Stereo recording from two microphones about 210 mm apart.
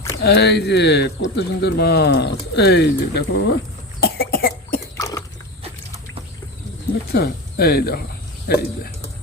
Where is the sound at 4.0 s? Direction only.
45° left (ahead or behind).